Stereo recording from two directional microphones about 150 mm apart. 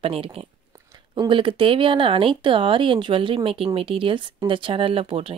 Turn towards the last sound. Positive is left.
turn(degrees=-40)  # may be behind; listen again after turning